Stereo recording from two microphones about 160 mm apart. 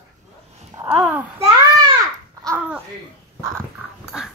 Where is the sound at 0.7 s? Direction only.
15° right (ahead or behind).